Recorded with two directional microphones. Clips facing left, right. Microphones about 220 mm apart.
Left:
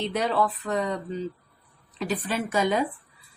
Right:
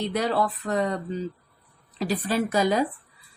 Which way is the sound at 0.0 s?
40° right (ahead or behind).